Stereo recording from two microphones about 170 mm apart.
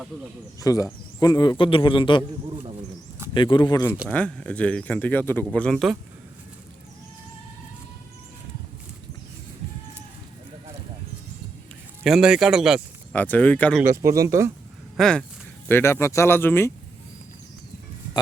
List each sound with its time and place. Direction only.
0.6 s a man's voice: 20° left (ahead or behind)
3.3 s a man's voice: 30° left (ahead or behind)
4.1 s speech: 5° left (ahead or behind)
12.0 s speech: 5° right (ahead or behind)
13.1 s speech: 10° left (ahead or behind)
13.8 s speech: 15° right (ahead or behind)
14.9 s speech: 5° left (ahead or behind)
15.7 s speech: 15° left (ahead or behind)